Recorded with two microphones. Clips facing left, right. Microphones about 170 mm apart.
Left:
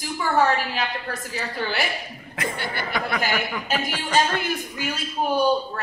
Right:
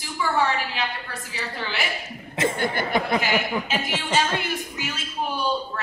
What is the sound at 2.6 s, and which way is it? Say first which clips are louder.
Speech: right 5 dB; 50° right (ahead or behind).